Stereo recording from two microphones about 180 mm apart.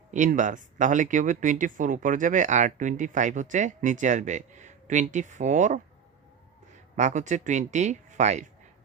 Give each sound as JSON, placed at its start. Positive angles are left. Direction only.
{"t": 0.1, "sound": "speech", "side_deg": -45}
{"t": 6.9, "sound": "speech", "side_deg": -45}